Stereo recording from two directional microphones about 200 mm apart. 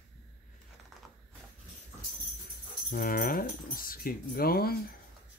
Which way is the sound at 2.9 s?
45° left (ahead or behind).